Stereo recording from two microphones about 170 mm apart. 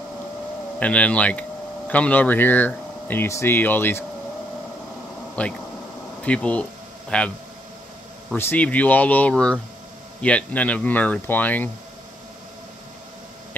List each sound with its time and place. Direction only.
0.7 s speech: 10° left (ahead or behind)
5.4 s a man's voice: 10° left (ahead or behind)
8.4 s speech: 10° left (ahead or behind)